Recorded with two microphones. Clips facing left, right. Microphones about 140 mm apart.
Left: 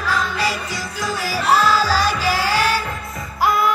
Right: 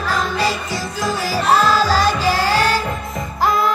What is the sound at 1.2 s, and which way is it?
Music, 40° right (ahead or behind).